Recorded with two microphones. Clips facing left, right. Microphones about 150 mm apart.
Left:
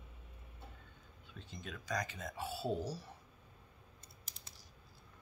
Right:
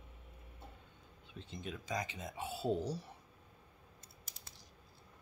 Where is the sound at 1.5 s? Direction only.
25° right (ahead or behind).